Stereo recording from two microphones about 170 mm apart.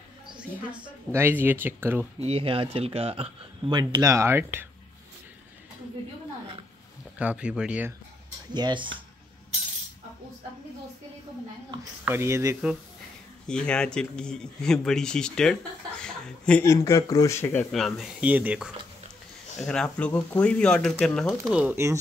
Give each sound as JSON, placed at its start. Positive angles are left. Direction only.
{"t": 0.4, "sound": "speech", "side_deg": -5}
{"t": 2.1, "sound": "speech", "side_deg": -35}
{"t": 7.2, "sound": "speech", "side_deg": -5}
{"t": 8.5, "sound": "speech", "side_deg": -25}
{"t": 12.0, "sound": "speech", "side_deg": -15}
{"t": 13.5, "sound": "speech", "side_deg": 5}
{"t": 16.0, "sound": "chuckle", "side_deg": 5}
{"t": 16.6, "sound": "speech", "side_deg": 20}
{"t": 19.6, "sound": "speech", "side_deg": 5}
{"t": 21.5, "sound": "speech", "side_deg": -10}